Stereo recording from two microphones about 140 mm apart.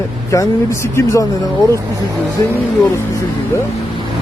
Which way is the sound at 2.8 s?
20° left (ahead or behind).